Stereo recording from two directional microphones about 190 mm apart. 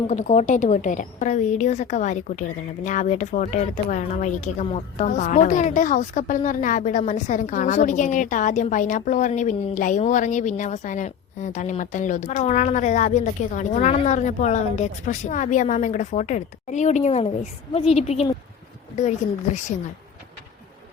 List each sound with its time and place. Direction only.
0.1 s speech: 40° left (ahead or behind)